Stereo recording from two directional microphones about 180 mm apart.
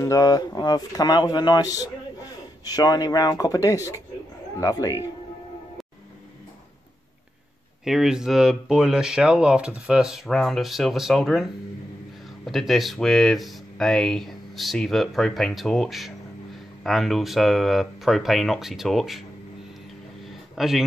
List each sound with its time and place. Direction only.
0.0 s speech: 20° left (ahead or behind)
7.8 s speech: centre (ahead or behind)
12.4 s speech: centre (ahead or behind)
20.2 s a sound: centre (ahead or behind)